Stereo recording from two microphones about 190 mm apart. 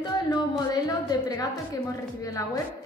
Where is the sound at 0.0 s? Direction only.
20° left (ahead or behind).